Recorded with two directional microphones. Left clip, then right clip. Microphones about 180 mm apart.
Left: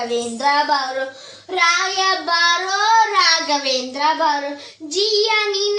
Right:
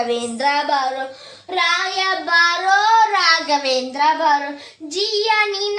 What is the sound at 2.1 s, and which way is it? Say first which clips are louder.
Child singing: right 2 dB; 20° right (ahead or behind).